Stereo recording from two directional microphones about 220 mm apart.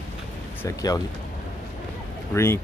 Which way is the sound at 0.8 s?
15° left (ahead or behind).